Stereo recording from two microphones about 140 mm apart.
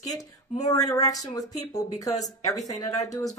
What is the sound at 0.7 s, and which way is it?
Speech, 25° left (ahead or behind).